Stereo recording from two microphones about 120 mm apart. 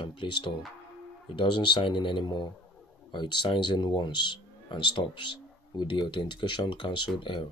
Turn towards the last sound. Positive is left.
turn(degrees=45)  # may be behind; listen again after turning